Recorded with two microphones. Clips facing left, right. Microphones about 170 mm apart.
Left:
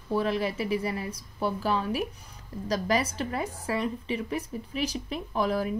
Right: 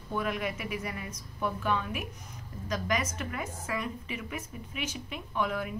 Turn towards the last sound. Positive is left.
turn(degrees=35)  # may be behind; listen again after turning